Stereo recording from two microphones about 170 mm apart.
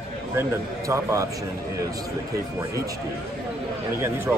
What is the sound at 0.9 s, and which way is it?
Speech, 15° right (ahead or behind).